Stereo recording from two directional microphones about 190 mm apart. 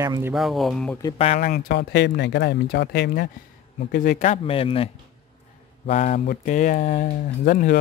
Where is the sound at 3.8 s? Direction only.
45° left (ahead or behind); by 4.9 s 30° left (ahead or behind).